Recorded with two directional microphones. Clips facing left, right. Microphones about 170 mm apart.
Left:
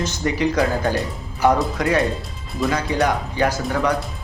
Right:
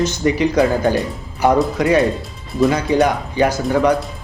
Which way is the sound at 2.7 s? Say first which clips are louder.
Right 3 dB; 20° right (ahead or behind).